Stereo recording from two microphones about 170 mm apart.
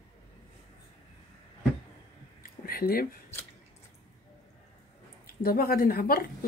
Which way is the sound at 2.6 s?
60° left (ahead or behind).